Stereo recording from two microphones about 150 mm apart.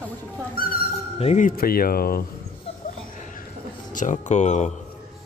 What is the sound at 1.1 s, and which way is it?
Speech, 45° left (ahead or behind).